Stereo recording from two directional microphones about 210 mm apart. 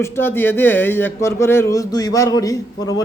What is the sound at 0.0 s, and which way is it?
Speech, 10° left (ahead or behind).